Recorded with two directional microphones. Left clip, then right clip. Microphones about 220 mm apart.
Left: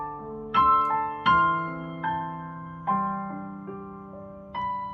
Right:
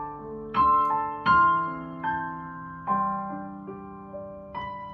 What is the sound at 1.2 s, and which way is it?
Music, 35° left (ahead or behind).